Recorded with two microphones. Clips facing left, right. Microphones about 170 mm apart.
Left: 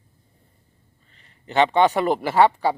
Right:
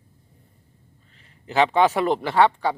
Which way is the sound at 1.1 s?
Centre (ahead or behind).